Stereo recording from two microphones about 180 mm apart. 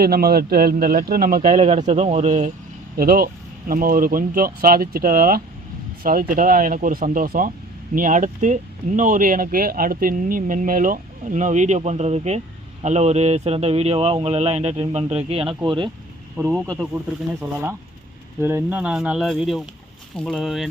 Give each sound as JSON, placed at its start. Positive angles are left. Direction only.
{"t": 0.0, "sound": "speech", "side_deg": -60}
{"t": 3.0, "sound": "a man's voice", "side_deg": -55}
{"t": 16.4, "sound": "speech", "side_deg": -15}